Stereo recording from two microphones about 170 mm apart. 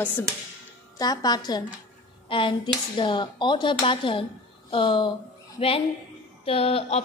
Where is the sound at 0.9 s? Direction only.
20° left (ahead or behind).